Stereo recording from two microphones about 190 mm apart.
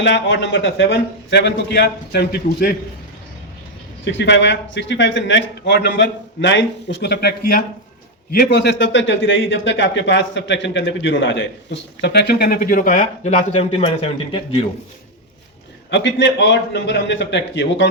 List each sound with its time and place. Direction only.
0.0 s a man's voice: 70° left (ahead or behind)
4.0 s a man's voice: 70° left (ahead or behind); by 14.7 s 30° left (ahead or behind)
15.9 s a man's voice: 70° left (ahead or behind)